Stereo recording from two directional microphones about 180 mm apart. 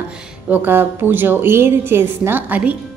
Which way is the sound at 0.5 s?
10° right (ahead or behind).